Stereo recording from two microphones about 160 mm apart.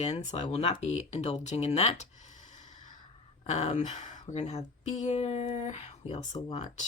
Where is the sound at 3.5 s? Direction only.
45° left (ahead or behind).